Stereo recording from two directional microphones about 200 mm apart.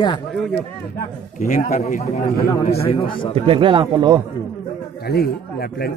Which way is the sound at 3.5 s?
25° right (ahead or behind).